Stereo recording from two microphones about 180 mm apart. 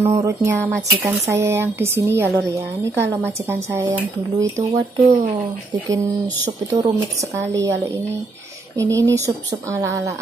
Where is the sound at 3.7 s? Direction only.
15° right (ahead or behind).